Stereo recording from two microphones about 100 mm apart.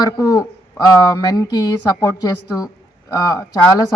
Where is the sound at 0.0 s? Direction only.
35° left (ahead or behind).